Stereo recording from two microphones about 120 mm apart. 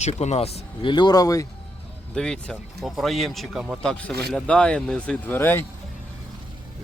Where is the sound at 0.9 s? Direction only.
40° left (ahead or behind).